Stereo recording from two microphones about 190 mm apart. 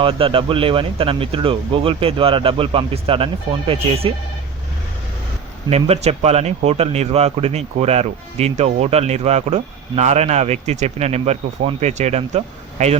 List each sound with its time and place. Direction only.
0.0 s speech: 30° right (ahead or behind)
5.7 s speech: 35° right (ahead or behind)